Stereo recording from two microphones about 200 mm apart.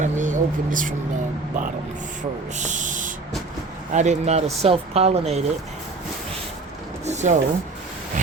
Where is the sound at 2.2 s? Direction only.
35° right (ahead or behind).